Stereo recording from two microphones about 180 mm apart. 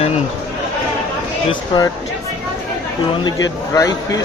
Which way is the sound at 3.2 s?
20° left (ahead or behind).